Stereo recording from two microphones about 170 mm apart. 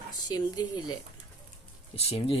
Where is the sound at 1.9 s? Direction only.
35° left (ahead or behind).